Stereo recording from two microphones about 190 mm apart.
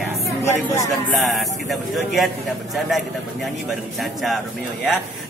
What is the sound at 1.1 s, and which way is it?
Speech, centre (ahead or behind).